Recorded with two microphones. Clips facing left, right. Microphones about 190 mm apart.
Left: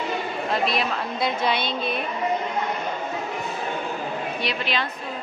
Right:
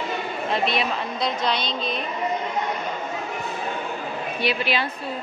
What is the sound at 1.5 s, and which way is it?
Speech, 55° left (ahead or behind).